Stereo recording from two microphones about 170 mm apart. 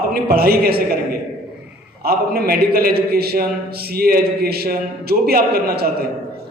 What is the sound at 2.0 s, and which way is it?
A man's voice, 65° right (ahead or behind).